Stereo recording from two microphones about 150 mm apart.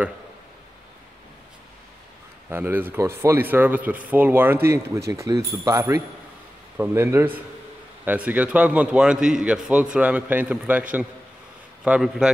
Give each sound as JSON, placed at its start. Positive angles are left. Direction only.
{"t": 2.5, "sound": "a man's voice", "side_deg": -15}